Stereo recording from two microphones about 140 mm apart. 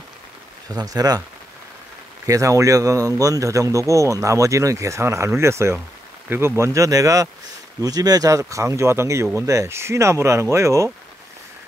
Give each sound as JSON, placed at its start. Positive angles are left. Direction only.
{"t": 0.7, "sound": "a man's voice", "side_deg": -25}
{"t": 2.2, "sound": "a man's voice", "side_deg": -25}